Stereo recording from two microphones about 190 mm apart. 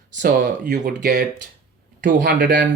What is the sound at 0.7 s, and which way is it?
Speech, 50° right (ahead or behind).